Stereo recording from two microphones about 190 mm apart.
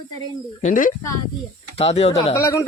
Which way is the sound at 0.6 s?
40° left (ahead or behind).